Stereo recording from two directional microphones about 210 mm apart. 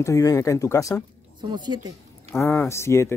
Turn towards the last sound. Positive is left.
turn(degrees=15)  # may be behind; listen again after turning